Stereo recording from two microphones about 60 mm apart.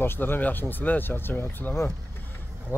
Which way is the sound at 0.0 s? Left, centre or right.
Left.